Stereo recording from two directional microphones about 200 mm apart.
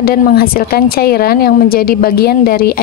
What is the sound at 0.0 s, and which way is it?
Speech, 50° left (ahead or behind).